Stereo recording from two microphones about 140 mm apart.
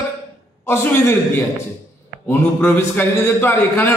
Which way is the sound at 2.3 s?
15° left (ahead or behind).